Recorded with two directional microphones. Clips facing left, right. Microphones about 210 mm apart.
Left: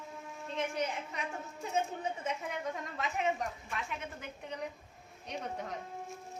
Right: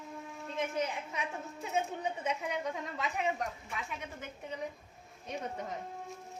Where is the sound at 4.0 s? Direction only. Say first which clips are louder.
Even; centre (ahead or behind).